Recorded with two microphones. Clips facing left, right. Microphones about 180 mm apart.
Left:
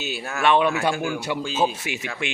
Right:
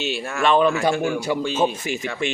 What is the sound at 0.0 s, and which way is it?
A man's voice, centre (ahead or behind).